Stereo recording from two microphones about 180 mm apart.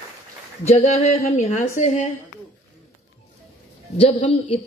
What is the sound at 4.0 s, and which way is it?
Speech, 35° left (ahead or behind).